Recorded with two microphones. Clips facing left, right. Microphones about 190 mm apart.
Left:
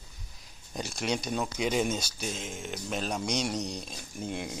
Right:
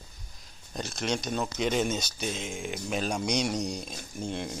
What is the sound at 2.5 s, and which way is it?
Speech, 10° right (ahead or behind).